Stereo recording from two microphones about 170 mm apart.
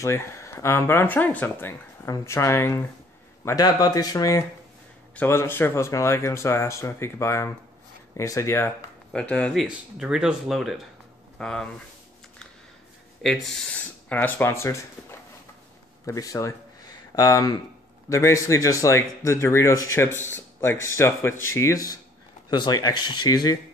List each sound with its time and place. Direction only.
0.0 s speech: 15° left (ahead or behind)
13.2 s speech: 5° left (ahead or behind); by 23.6 s 25° left (ahead or behind)